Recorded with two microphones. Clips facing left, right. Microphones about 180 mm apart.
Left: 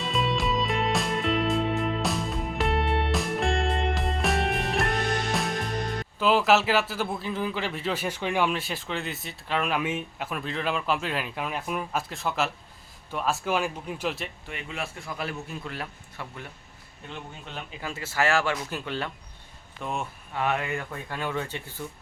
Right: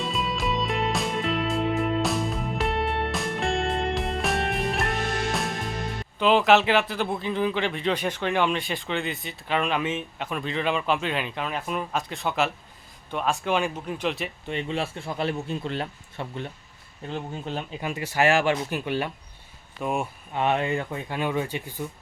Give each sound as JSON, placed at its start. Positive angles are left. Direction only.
{"t": 0.0, "sound": "music", "side_deg": 0}
{"t": 6.1, "sound": "a man's voice", "side_deg": 5}
{"t": 14.4, "sound": "a man's voice", "side_deg": -30}
{"t": 17.7, "sound": "speech", "side_deg": -15}
{"t": 20.4, "sound": "speech", "side_deg": -25}